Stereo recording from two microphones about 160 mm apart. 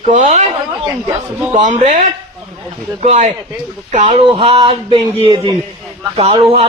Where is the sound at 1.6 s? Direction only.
50° right (ahead or behind).